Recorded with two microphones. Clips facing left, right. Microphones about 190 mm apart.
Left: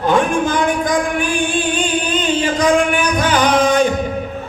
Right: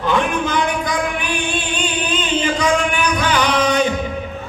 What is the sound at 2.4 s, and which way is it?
Music, 45° left (ahead or behind).